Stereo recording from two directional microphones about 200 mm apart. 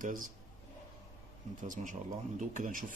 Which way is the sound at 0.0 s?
40° right (ahead or behind).